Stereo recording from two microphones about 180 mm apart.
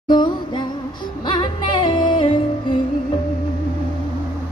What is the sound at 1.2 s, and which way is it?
Music, 25° left (ahead or behind).